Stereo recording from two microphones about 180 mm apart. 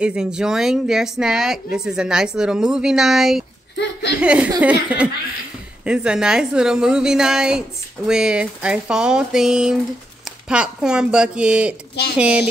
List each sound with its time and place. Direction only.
0.0 s speech: 5° right (ahead or behind)
3.7 s speech: 70° left (ahead or behind)
4.2 s speech: 5° right (ahead or behind)